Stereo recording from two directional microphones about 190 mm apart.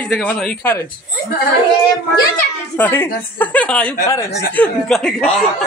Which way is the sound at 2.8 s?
10° left (ahead or behind).